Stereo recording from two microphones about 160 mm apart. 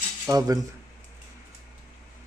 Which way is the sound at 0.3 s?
25° right (ahead or behind).